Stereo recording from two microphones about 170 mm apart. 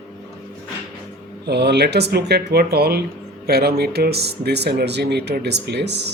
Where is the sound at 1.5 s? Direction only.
75° right (ahead or behind).